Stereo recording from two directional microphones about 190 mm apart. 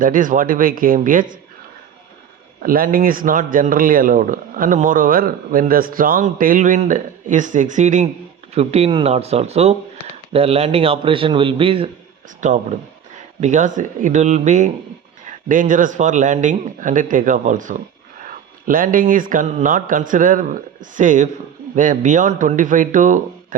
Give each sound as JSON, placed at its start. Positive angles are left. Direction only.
{"t": 0.0, "sound": "a man's voice", "side_deg": -45}
{"t": 2.6, "sound": "a man's voice", "side_deg": -50}
{"t": 12.4, "sound": "a man's voice", "side_deg": -40}